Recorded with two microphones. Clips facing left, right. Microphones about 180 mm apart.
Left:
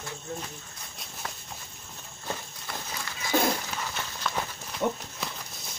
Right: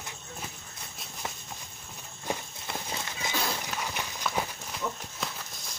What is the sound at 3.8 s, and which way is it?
Run, 10° right (ahead or behind).